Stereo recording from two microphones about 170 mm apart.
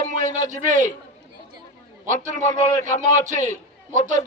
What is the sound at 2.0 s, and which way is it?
A man's voice, 45° right (ahead or behind).